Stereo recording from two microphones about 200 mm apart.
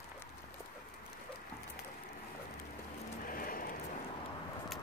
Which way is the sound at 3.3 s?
45° left (ahead or behind).